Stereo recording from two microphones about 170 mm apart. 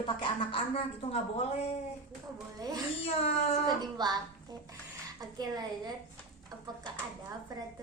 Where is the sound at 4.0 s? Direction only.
25° right (ahead or behind).